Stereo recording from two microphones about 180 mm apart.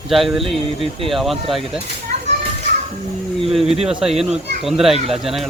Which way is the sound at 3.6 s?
35° right (ahead or behind).